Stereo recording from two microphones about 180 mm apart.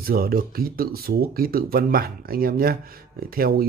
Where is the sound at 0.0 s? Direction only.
55° right (ahead or behind).